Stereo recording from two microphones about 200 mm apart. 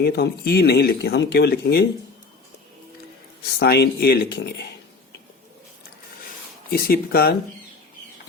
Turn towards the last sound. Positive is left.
turn(degrees=50)  # may be behind; listen again after turning